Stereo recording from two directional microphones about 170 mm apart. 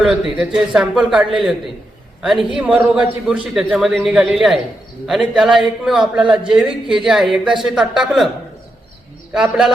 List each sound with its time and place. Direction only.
0.0 s a man's voice: 5° right (ahead or behind)
2.6 s a man's voice: 5° right (ahead or behind)
9.3 s a man's voice: 5° right (ahead or behind)